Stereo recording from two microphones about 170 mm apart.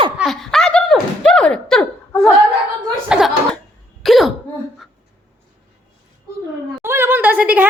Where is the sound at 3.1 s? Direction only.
Centre (ahead or behind).